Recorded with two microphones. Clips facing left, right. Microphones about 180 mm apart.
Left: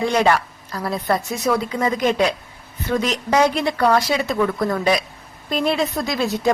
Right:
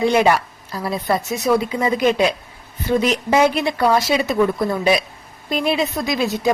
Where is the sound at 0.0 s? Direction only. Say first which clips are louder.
Right 2 dB; 15° right (ahead or behind).